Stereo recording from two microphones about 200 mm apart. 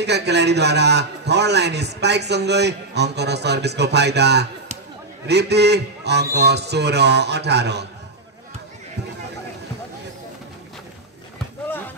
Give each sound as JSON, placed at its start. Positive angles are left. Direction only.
{"t": 0.0, "sound": "a man's voice", "side_deg": -55}